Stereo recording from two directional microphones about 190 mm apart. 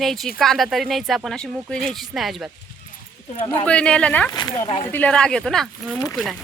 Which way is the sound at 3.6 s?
5° left (ahead or behind).